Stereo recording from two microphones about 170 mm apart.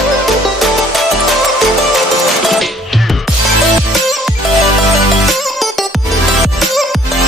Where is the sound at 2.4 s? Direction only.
Centre (ahead or behind).